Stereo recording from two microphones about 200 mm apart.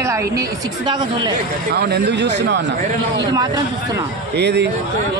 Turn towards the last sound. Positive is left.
turn(degrees=-60)  # may be behind; listen again after turning